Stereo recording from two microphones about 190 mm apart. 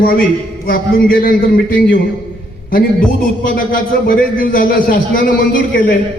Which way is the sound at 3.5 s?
45° left (ahead or behind).